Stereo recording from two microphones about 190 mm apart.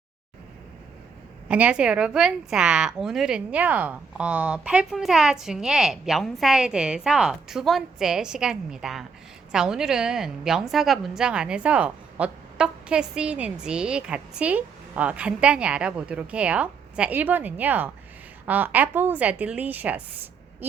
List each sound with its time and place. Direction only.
1.5 s a woman's voice: 5° right (ahead or behind)